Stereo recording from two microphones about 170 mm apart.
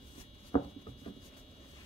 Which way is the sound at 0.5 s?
25° left (ahead or behind).